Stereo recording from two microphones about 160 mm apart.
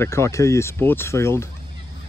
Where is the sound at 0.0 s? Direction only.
20° left (ahead or behind).